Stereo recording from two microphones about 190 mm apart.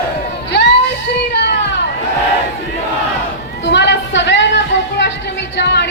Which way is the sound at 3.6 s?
70° left (ahead or behind).